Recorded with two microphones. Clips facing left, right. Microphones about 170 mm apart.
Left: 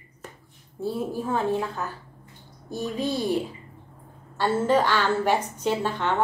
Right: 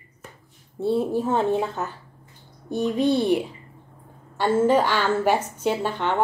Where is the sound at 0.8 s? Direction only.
25° right (ahead or behind).